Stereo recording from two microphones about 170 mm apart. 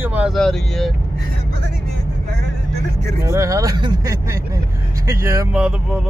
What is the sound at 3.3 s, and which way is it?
Speech, 20° right (ahead or behind).